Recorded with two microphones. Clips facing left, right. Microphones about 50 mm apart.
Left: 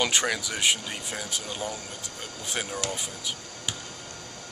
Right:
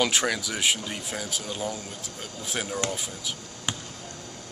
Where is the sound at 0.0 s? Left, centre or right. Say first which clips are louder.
Right 1 dB; centre.